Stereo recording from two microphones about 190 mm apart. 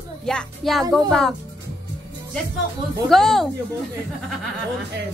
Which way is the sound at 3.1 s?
Centre (ahead or behind).